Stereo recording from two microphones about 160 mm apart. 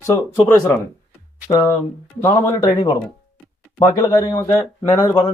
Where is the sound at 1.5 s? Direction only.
25° left (ahead or behind).